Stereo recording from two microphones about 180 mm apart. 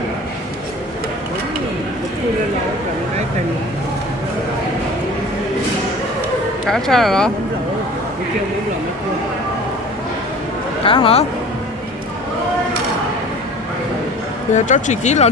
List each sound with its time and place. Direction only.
6.6 s speech: centre (ahead or behind)
10.8 s speech: 30° left (ahead or behind)
14.5 s speech: 40° left (ahead or behind)